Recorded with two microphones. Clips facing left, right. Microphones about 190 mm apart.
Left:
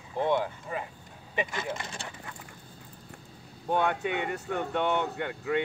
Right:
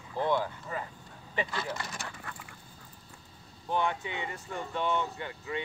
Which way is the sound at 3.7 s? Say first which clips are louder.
Left 4 dB; 65° left (ahead or behind).